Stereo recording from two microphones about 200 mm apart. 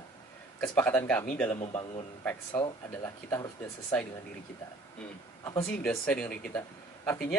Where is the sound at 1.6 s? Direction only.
30° left (ahead or behind).